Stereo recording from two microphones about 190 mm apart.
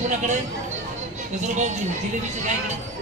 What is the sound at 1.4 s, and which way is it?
Speech, 40° right (ahead or behind).